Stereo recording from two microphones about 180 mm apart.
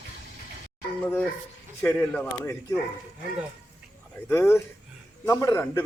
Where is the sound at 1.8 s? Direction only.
10° left (ahead or behind).